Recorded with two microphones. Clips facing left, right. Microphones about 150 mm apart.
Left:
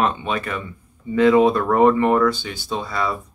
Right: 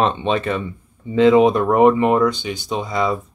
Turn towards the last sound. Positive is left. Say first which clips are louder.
# right 3 dB
turn(degrees=-20)  # may be behind; listen again after turning